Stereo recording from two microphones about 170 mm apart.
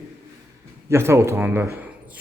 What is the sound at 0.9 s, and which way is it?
Speech, 15° right (ahead or behind).